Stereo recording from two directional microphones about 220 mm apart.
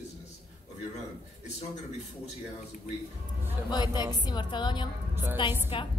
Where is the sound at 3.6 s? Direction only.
20° left (ahead or behind).